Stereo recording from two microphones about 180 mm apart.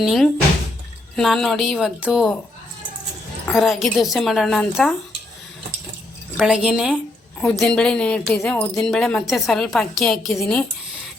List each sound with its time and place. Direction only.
0.0 s speech: centre (ahead or behind)
3.4 s speech: centre (ahead or behind)
6.3 s speech: 5° right (ahead or behind)